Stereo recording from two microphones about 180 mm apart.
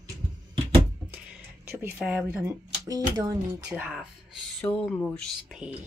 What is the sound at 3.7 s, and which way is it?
Speech, 5° right (ahead or behind).